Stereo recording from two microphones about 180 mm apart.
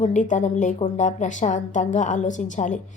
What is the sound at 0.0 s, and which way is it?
A woman's voice, 45° left (ahead or behind).